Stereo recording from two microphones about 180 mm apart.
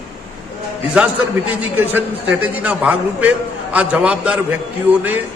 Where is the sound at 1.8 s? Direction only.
10° right (ahead or behind).